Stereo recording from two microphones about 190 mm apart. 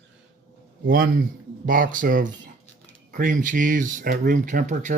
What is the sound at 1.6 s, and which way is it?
Speech, 45° right (ahead or behind).